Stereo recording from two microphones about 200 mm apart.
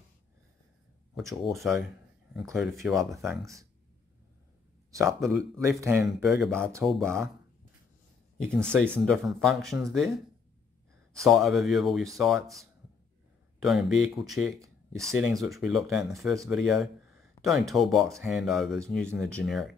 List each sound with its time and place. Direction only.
1.4 s speech: centre (ahead or behind)
5.0 s speech: centre (ahead or behind)
5.6 s speech: 15° right (ahead or behind)
6.4 s speech: 5° left (ahead or behind)
8.7 s speech: 5° left (ahead or behind)